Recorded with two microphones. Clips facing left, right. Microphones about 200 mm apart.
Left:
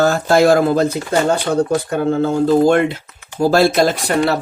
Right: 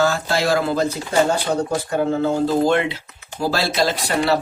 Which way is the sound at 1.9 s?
50° left (ahead or behind).